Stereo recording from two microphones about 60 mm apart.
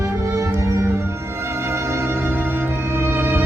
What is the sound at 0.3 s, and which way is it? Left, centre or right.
Music, right.